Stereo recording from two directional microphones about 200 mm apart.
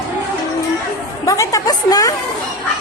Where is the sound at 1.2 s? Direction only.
15° left (ahead or behind).